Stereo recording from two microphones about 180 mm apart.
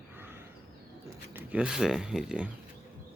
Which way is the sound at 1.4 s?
5° right (ahead or behind).